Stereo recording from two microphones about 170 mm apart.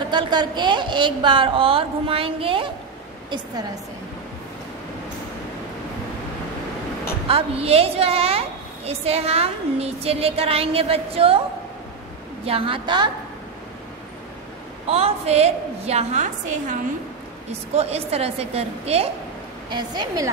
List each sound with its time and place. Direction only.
0.1 s a woman's voice: 25° right (ahead or behind)
7.2 s a woman's voice: 35° right (ahead or behind)
12.4 s a woman's voice: 35° right (ahead or behind)
14.9 s a woman's voice: 35° right (ahead or behind)
19.7 s a woman's voice: 25° right (ahead or behind)